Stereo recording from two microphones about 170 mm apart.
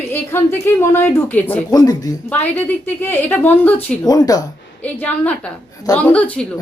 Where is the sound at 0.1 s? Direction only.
15° left (ahead or behind).